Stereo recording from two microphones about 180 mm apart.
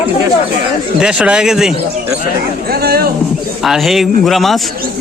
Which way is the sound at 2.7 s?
60° right (ahead or behind).